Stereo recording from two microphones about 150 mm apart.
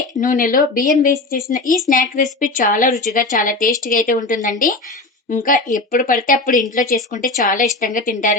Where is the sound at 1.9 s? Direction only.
60° left (ahead or behind).